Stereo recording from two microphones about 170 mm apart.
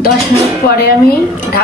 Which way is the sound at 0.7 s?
65° left (ahead or behind).